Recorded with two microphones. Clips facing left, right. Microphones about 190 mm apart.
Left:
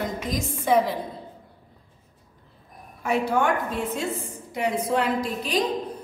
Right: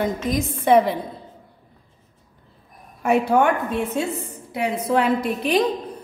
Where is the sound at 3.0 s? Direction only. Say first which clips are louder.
Right 5 dB; 60° right (ahead or behind).